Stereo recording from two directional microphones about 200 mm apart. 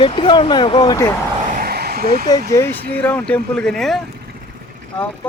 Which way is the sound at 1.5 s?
45° right (ahead or behind).